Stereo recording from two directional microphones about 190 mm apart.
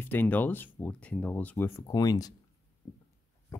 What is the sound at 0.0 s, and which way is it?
Speech, 10° left (ahead or behind).